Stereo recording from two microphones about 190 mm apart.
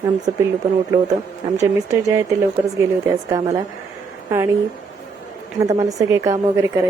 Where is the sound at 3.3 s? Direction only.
15° right (ahead or behind).